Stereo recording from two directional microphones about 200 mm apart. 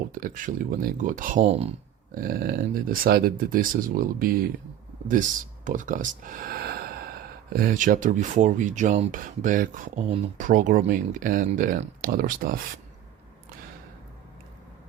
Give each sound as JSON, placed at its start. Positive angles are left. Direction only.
{"t": 0.1, "sound": "speech", "side_deg": -45}
{"t": 1.5, "sound": "speech", "side_deg": -30}
{"t": 2.1, "sound": "speech", "side_deg": -50}
{"t": 5.6, "sound": "speech", "side_deg": -40}